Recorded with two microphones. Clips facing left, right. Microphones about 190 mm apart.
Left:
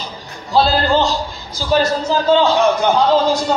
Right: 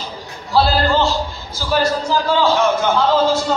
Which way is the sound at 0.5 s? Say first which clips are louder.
Left 1 dB; 20° left (ahead or behind).